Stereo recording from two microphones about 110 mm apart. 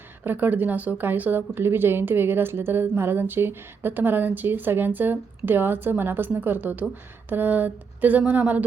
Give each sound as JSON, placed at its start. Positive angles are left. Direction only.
{"t": 0.3, "sound": "speech", "side_deg": -15}